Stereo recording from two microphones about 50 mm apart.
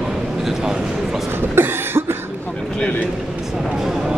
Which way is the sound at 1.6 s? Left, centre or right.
Right.